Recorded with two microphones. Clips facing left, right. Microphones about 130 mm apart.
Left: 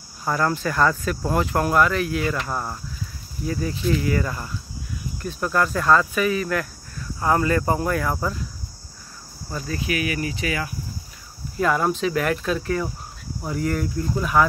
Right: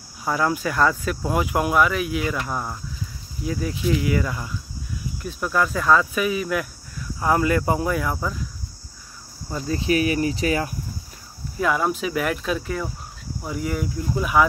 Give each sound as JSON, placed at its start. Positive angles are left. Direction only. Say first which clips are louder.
{"t": 0.2, "sound": "speech", "louder": "even", "side_deg": -5}
{"t": 9.5, "sound": "cricket", "louder": "right 4 dB", "side_deg": -25}
{"t": 11.6, "sound": "speech", "louder": "left 1 dB", "side_deg": -5}